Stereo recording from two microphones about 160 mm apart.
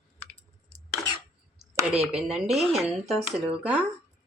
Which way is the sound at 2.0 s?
5° right (ahead or behind).